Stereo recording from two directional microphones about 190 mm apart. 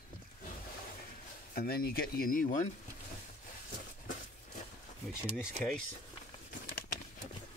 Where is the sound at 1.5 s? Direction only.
50° left (ahead or behind).